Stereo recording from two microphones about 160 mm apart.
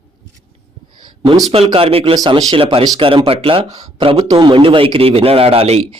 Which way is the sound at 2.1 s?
25° right (ahead or behind).